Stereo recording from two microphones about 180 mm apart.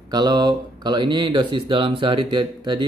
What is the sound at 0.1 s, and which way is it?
Speech, 20° right (ahead or behind).